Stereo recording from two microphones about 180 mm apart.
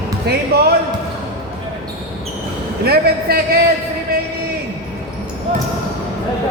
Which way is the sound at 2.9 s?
60° right (ahead or behind).